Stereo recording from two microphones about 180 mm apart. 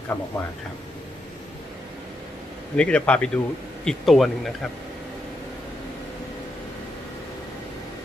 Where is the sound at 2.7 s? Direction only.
5° left (ahead or behind).